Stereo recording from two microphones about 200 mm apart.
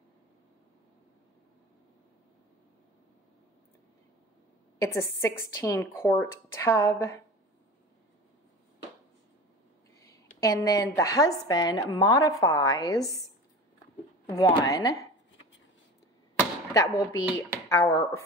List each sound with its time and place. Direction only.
4.8 s speech: 15° left (ahead or behind)
9.9 s a sound: 15° left (ahead or behind)
11.0 s speech: 15° left (ahead or behind)
14.2 s speech: 20° left (ahead or behind)
16.3 s speech: 15° left (ahead or behind)